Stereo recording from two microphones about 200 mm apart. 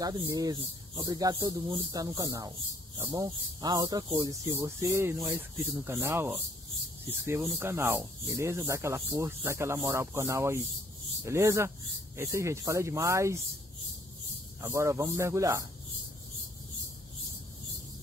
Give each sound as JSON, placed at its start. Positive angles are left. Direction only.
{"t": 0.0, "sound": "speech", "side_deg": -20}
{"t": 14.6, "sound": "speech", "side_deg": -15}